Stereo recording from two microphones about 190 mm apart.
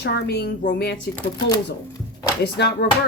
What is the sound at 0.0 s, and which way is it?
Speech, 60° left (ahead or behind).